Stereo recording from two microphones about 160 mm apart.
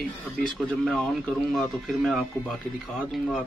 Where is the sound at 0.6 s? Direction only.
5° left (ahead or behind).